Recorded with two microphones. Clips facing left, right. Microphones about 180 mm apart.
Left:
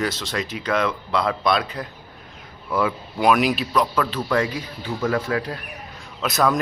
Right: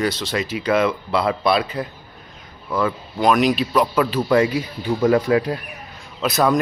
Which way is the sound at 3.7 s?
10° right (ahead or behind).